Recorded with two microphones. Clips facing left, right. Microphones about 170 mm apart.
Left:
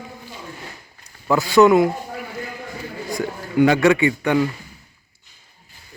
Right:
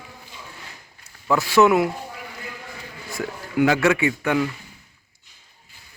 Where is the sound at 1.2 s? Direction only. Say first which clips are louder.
Left 3 dB; centre (ahead or behind).